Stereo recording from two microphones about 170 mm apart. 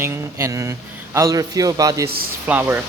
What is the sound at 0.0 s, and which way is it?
A man's voice, 15° right (ahead or behind).